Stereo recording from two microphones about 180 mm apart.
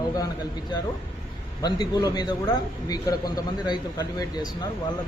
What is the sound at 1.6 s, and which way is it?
Speech, 25° left (ahead or behind).